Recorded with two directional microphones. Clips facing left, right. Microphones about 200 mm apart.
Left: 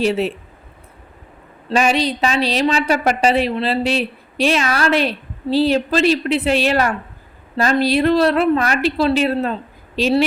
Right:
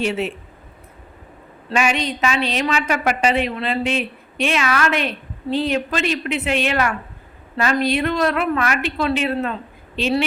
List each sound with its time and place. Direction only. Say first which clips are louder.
0.0 s a woman's voice: left 4 dB; 35° left (ahead or behind)
1.7 s a woman's voice: left 4 dB; 35° left (ahead or behind)